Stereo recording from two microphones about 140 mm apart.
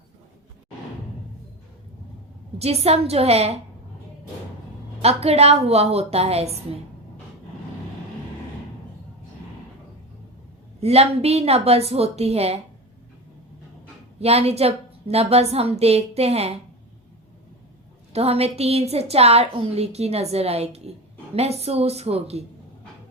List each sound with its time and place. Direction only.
2.6 s a woman's voice: 45° right (ahead or behind)
5.0 s a woman's voice: 50° right (ahead or behind)
10.8 s a woman's voice: 50° right (ahead or behind)
14.2 s a woman's voice: 45° right (ahead or behind)
18.1 s a woman's voice: 45° right (ahead or behind)